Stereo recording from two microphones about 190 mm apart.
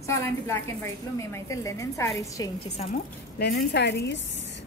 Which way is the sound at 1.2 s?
15° left (ahead or behind).